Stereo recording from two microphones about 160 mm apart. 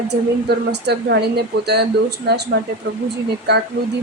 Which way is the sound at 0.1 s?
90° right.